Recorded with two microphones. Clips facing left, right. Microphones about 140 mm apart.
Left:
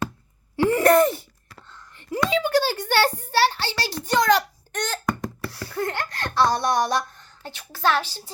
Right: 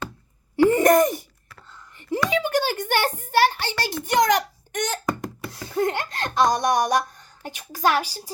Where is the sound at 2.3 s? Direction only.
15° right (ahead or behind).